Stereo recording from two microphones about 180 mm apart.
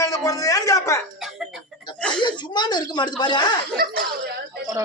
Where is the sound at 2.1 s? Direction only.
25° left (ahead or behind).